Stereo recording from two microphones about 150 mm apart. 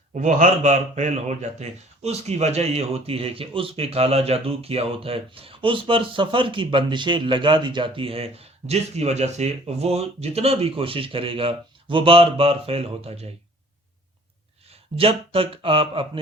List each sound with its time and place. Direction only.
0.1 s a man's voice: 55° right (ahead or behind)
14.9 s a man's voice: 40° right (ahead or behind)